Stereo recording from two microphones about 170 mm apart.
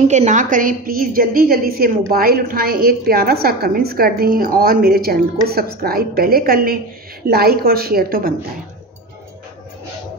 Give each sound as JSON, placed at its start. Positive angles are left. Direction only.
{"t": 0.1, "sound": "a woman's voice", "side_deg": -45}